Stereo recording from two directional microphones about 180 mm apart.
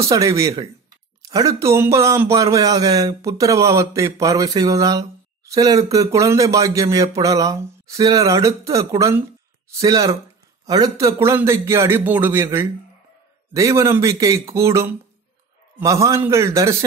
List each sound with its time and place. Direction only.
0.0 s speech: 15° right (ahead or behind)